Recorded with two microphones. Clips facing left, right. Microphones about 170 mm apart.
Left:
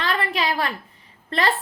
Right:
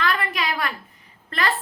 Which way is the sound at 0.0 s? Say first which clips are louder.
Left 1 dB; 30° left (ahead or behind).